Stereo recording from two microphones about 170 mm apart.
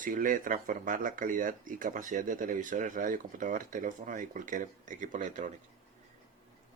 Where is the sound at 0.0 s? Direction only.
50° right (ahead or behind).